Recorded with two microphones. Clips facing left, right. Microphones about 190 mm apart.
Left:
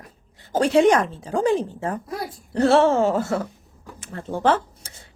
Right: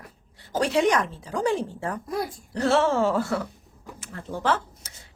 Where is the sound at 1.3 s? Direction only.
20° left (ahead or behind).